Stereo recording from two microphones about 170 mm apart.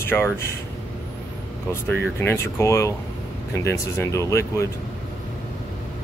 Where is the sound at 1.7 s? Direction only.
15° left (ahead or behind).